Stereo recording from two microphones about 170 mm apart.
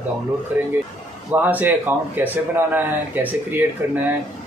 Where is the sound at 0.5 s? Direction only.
10° right (ahead or behind).